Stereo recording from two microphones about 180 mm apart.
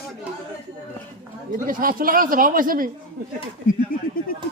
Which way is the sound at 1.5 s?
50° right (ahead or behind).